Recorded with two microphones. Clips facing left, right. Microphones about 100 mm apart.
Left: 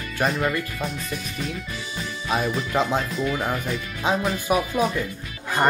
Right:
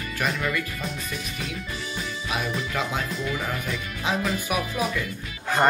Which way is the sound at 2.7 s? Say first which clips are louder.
Left 7 dB; 25° left (ahead or behind).